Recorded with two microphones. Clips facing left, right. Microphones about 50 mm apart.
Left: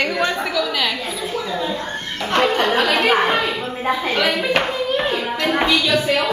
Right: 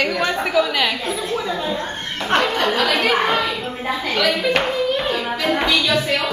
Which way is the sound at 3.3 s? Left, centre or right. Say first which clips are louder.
Even; centre.